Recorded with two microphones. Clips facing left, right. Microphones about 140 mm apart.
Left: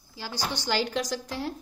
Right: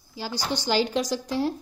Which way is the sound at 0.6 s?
20° right (ahead or behind).